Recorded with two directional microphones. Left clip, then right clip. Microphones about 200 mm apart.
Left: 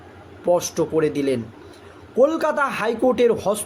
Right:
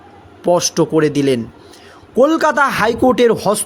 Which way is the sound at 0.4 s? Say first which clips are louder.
Right 6 dB; 45° right (ahead or behind).